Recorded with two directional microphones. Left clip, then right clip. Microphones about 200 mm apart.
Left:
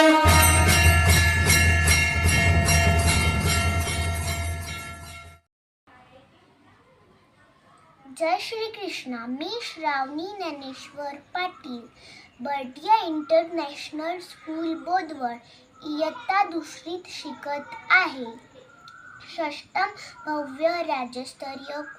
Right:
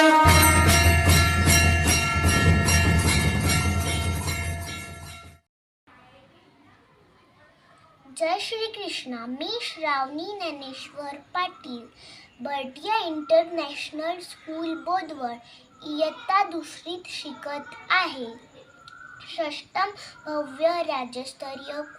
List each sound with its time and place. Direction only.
0.0 s jingle bell: centre (ahead or behind)
3.5 s train: 10° right (ahead or behind)
8.1 s a child's voice: 15° right (ahead or behind)